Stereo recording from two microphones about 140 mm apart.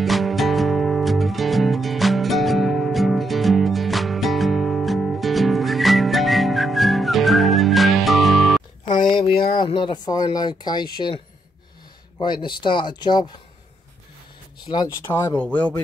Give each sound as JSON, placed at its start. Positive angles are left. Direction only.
{"t": 0.0, "sound": "music", "side_deg": 0}
{"t": 9.3, "sound": "a sound", "side_deg": 90}
{"t": 9.7, "sound": "speech", "side_deg": 35}
{"t": 12.2, "sound": "speech", "side_deg": 35}
{"t": 14.7, "sound": "speech", "side_deg": 45}
{"t": 15.0, "sound": "speech", "side_deg": 15}